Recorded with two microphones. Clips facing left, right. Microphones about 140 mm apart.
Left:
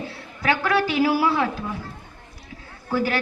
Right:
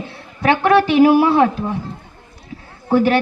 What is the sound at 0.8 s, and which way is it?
Speech, 25° right (ahead or behind).